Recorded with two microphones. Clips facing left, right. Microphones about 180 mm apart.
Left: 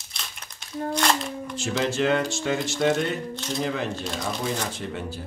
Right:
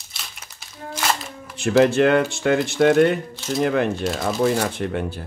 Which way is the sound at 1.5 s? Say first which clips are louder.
Right 10 dB; 60° right (ahead or behind).